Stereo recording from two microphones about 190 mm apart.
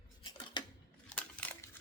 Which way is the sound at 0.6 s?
25° left (ahead or behind).